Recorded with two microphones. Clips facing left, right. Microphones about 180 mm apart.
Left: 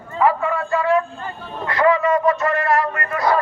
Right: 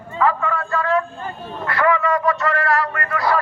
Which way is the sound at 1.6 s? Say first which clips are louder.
Left 2 dB; 20° left (ahead or behind).